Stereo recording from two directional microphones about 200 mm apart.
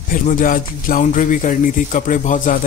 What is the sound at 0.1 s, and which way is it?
Speech, 40° left (ahead or behind).